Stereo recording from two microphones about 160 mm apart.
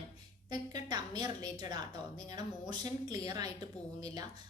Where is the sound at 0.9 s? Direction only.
25° right (ahead or behind).